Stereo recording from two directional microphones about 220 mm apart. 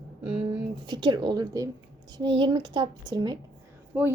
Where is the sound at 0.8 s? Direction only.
20° right (ahead or behind).